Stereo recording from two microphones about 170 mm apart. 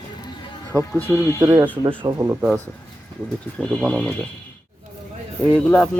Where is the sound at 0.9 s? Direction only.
10° left (ahead or behind).